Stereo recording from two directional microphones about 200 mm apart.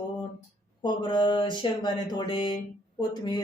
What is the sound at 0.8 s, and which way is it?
Speech, 20° left (ahead or behind).